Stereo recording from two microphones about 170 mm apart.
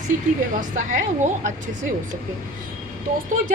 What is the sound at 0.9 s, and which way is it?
Speech, 45° right (ahead or behind).